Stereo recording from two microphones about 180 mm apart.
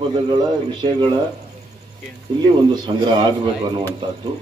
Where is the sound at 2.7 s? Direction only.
25° right (ahead or behind).